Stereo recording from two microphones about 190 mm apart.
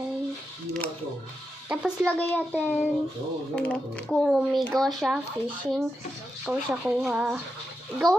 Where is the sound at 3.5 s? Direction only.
5° left (ahead or behind).